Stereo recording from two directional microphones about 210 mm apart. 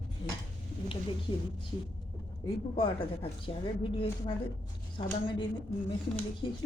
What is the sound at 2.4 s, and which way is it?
A woman's voice, 25° left (ahead or behind).